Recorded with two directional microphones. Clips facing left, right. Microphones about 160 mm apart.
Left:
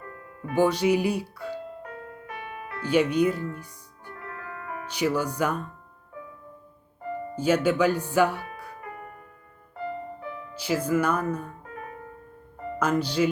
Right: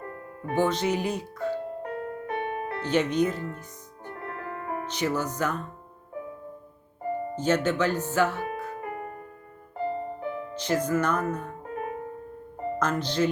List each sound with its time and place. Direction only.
0.0 s music: 30° right (ahead or behind)
0.5 s speech: 10° left (ahead or behind)
2.0 s music: 30° right (ahead or behind)
2.8 s speech: 10° left (ahead or behind)
4.1 s music: 30° right (ahead or behind)
4.9 s speech: 10° left (ahead or behind)
7.1 s music: 30° right (ahead or behind)
7.3 s speech: 10° left (ahead or behind)
8.8 s music: 25° right (ahead or behind)
10.5 s speech: 10° left (ahead or behind)
11.6 s music: 25° right (ahead or behind)
12.8 s speech: 10° left (ahead or behind)